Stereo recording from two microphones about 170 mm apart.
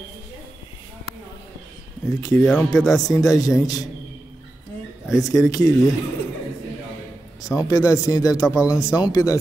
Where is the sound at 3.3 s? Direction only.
20° left (ahead or behind).